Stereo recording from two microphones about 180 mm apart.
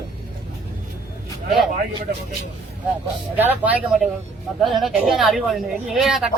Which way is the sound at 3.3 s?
10° right (ahead or behind).